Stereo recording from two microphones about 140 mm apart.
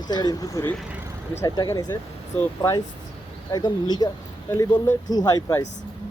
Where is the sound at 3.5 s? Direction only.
30° left (ahead or behind).